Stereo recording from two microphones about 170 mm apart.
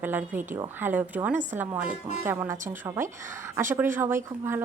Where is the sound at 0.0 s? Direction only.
10° right (ahead or behind).